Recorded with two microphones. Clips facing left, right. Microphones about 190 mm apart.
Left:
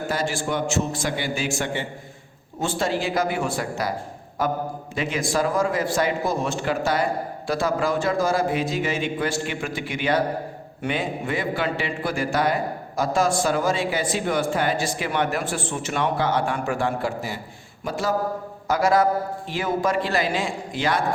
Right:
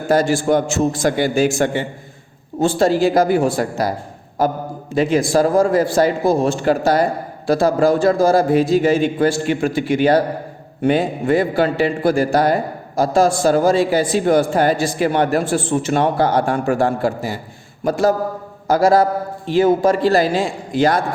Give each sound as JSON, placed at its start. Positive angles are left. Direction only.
{"t": 0.1, "sound": "a man's voice", "side_deg": -40}
{"t": 4.9, "sound": "a man's voice", "side_deg": -35}
{"t": 18.7, "sound": "a man's voice", "side_deg": -30}